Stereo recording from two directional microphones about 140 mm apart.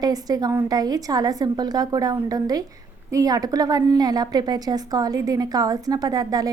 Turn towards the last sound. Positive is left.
turn(degrees=-25)  # may be behind; listen again after turning